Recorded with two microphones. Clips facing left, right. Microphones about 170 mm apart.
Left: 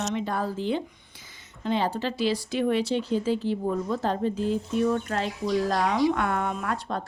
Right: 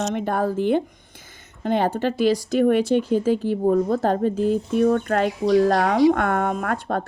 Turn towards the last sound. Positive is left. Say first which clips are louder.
# right 6 dB
turn(degrees=-55)  # may be behind; listen again after turning